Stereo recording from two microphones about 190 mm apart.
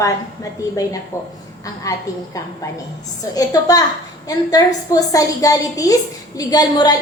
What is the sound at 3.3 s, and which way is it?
A woman's voice, 20° left (ahead or behind).